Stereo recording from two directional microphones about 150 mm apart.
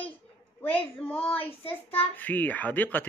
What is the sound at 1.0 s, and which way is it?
Speech, 10° left (ahead or behind).